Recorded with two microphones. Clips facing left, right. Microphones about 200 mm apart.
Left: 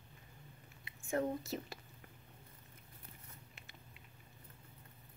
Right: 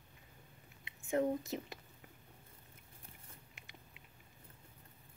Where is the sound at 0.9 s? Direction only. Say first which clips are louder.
Right 3 dB; 20° right (ahead or behind).